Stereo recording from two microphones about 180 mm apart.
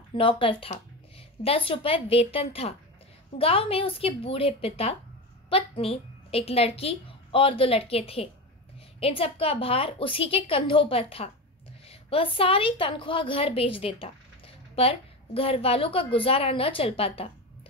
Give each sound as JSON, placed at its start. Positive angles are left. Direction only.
{"t": 0.1, "sound": "a woman's voice", "side_deg": 30}